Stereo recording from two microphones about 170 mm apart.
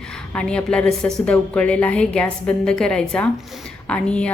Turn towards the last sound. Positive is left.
turn(degrees=5)  # may be behind; listen again after turning